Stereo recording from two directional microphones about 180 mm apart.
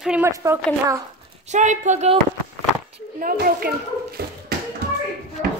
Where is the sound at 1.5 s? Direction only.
40° right (ahead or behind).